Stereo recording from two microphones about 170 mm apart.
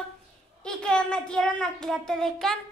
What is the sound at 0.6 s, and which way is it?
A child's voice, 5° left (ahead or behind).